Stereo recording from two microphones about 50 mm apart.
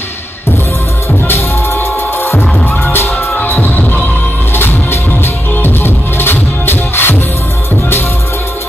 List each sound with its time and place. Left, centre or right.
1.2 s music: left
5.2 s music: left